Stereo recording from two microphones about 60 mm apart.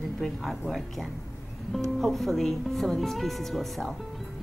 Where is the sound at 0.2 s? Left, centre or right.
Centre.